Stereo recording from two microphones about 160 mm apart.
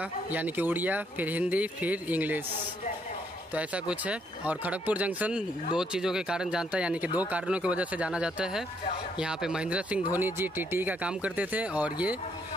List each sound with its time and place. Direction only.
0.3 s speech: 10° right (ahead or behind)
3.5 s speech: 10° right (ahead or behind)